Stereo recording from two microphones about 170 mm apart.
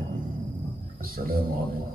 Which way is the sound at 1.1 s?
60° right (ahead or behind).